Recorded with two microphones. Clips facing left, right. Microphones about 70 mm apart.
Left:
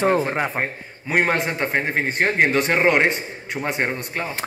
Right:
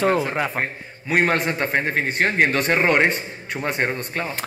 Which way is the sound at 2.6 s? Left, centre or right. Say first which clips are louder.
Even; centre.